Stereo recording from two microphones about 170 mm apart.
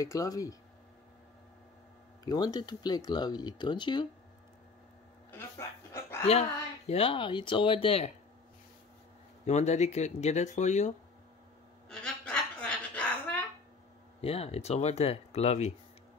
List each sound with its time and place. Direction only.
0.0 s speech: 20° left (ahead or behind)
2.2 s speech: 25° left (ahead or behind)
5.3 s chuckle: 15° left (ahead or behind)
6.9 s speech: 30° left (ahead or behind)
9.5 s speech: 40° left (ahead or behind)
11.9 s a sound: 5° left (ahead or behind)
14.2 s speech: 35° left (ahead or behind)